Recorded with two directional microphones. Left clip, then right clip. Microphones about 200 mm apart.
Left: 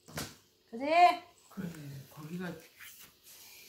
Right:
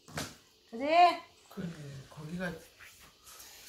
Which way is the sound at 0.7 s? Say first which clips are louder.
Even; 10° left (ahead or behind).